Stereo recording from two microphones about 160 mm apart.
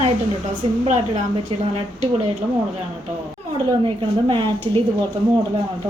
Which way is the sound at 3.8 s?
35° right (ahead or behind).